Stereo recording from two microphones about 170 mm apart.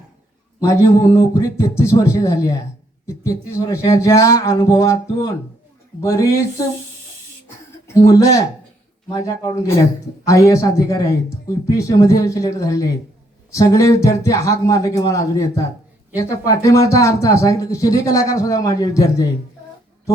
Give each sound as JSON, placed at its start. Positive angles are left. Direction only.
{"t": 0.6, "sound": "a man's voice", "side_deg": 15}
{"t": 7.9, "sound": "speech", "side_deg": 20}